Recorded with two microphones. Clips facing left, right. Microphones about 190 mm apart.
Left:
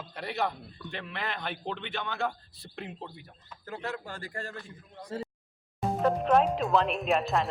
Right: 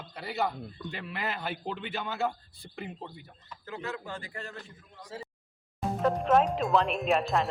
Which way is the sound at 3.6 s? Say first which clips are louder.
Left 1 dB; 45° left (ahead or behind).